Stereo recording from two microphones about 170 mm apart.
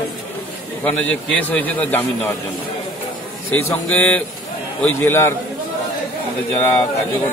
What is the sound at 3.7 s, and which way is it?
A man's voice, 10° left (ahead or behind).